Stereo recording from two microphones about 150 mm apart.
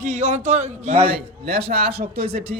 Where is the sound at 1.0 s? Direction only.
90° right.